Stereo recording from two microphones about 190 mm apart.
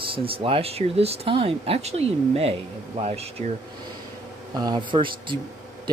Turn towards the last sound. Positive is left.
turn(degrees=-25)  # may be behind; listen again after turning